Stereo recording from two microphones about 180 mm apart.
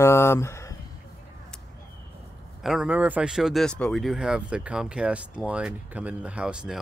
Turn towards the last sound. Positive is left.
turn(degrees=-5)  # may be behind; listen again after turning